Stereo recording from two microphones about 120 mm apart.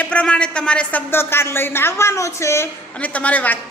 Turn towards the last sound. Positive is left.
turn(degrees=15)  # may be behind; listen again after turning